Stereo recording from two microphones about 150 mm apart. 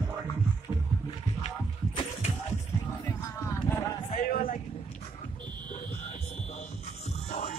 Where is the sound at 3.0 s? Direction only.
20° left (ahead or behind).